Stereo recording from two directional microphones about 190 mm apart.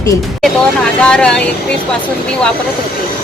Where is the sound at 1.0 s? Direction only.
5° left (ahead or behind).